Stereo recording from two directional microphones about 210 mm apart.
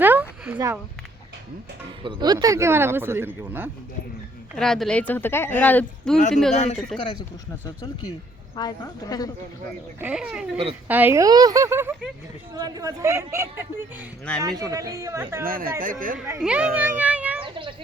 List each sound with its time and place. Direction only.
0.0 s a sound: 10° right (ahead or behind)
2.0 s speech: 20° right (ahead or behind)
4.5 s speech: 5° left (ahead or behind)
6.5 s a man's voice: 30° left (ahead or behind)
8.5 s speech: 15° left (ahead or behind)
10.0 s speech: 5° right (ahead or behind)
15.4 s speech: 45° right (ahead or behind)
16.1 s speech: 10° right (ahead or behind)
17.4 s a sound: 25° right (ahead or behind)